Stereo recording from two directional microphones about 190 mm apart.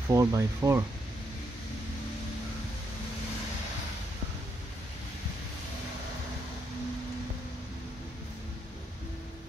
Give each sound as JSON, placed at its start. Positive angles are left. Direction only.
{"t": 0.1, "sound": "speech", "side_deg": -15}